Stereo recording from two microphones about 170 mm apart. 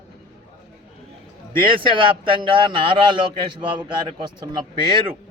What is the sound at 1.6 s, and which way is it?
Speech, 30° right (ahead or behind).